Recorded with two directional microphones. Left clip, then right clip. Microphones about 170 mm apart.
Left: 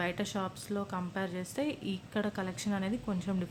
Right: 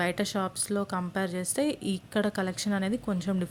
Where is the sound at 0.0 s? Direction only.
30° right (ahead or behind).